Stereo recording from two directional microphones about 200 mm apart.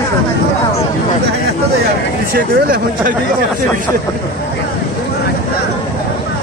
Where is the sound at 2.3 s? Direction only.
45° right (ahead or behind).